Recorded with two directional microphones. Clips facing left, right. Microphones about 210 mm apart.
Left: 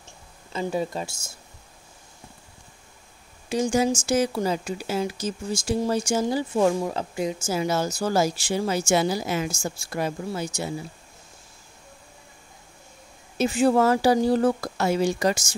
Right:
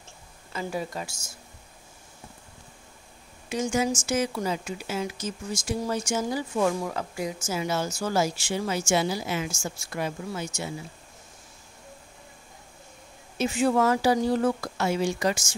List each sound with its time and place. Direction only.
0.5 s speech: 25° left (ahead or behind)
3.4 s speech: 30° left (ahead or behind)
13.4 s speech: 35° left (ahead or behind)